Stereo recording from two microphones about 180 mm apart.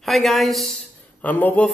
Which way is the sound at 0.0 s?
Centre (ahead or behind).